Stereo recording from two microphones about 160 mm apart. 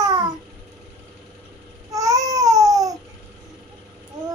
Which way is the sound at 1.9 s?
20° right (ahead or behind).